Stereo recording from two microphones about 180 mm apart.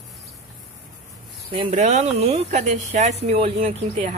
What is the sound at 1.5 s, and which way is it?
Speech, 35° right (ahead or behind).